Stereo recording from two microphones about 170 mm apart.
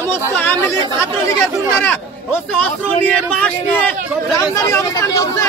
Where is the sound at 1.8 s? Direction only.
10° left (ahead or behind).